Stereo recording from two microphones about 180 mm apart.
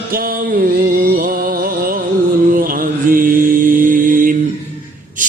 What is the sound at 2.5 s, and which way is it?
Mantra, 50° right (ahead or behind).